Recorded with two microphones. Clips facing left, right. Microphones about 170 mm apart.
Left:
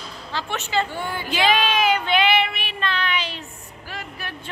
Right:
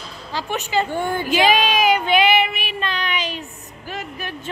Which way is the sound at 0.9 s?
50° right (ahead or behind).